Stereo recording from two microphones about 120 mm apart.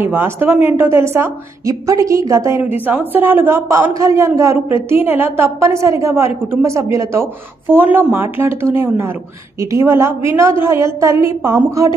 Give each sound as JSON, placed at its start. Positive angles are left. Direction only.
{"t": 0.0, "sound": "a woman's voice", "side_deg": -20}
{"t": 2.9, "sound": "a woman's voice", "side_deg": -15}